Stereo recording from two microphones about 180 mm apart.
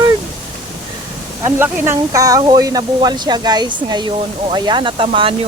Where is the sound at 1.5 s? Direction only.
10° right (ahead or behind).